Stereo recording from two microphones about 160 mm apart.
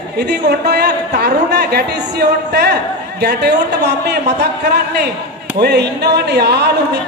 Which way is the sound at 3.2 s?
90° right.